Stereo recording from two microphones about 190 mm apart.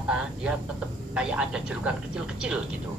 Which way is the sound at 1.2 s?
5° right (ahead or behind).